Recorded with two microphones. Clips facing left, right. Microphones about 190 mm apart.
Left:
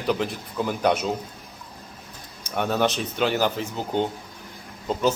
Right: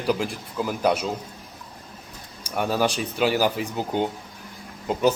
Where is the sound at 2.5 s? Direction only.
5° right (ahead or behind).